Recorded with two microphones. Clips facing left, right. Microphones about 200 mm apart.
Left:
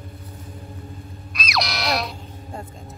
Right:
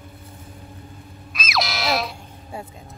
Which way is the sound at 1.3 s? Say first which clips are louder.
Right 1 dB; centre (ahead or behind).